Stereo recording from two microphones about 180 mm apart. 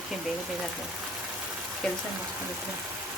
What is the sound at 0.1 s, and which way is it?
Speech, centre (ahead or behind).